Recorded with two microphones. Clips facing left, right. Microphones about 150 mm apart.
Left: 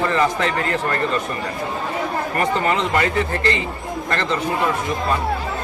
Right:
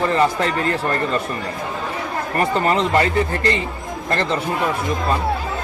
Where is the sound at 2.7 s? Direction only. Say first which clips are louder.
Right 2 dB; 35° right (ahead or behind).